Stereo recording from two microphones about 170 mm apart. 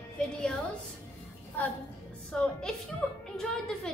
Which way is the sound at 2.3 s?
5° left (ahead or behind).